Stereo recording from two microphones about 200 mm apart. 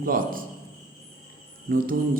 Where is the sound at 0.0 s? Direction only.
45° right (ahead or behind).